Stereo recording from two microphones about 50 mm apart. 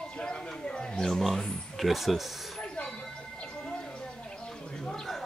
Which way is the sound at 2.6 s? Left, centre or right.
Centre.